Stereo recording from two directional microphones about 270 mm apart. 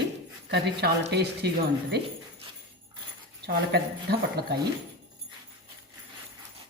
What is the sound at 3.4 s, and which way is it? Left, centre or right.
Speech, right.